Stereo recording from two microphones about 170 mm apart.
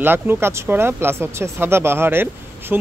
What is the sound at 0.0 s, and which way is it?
Speech, 10° right (ahead or behind).